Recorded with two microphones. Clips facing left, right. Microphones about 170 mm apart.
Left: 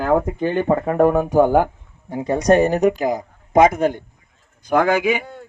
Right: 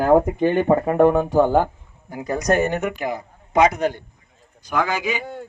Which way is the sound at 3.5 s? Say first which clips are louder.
Left 3 dB; 50° left (ahead or behind).